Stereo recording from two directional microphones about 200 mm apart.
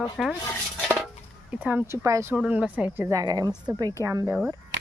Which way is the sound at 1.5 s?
10° right (ahead or behind).